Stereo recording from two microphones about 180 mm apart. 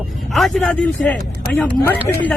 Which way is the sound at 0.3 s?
Centre (ahead or behind).